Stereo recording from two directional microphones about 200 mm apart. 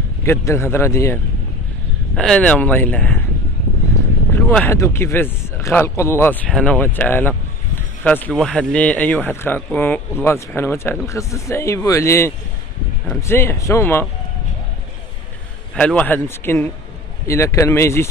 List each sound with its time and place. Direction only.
0.2 s speech: 15° left (ahead or behind)
4.4 s speech: 10° left (ahead or behind)
15.7 s speech: 5° left (ahead or behind)